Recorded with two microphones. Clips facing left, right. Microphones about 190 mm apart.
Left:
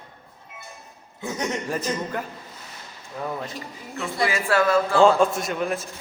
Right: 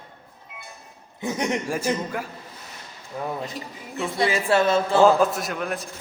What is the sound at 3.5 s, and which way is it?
Speech, centre (ahead or behind).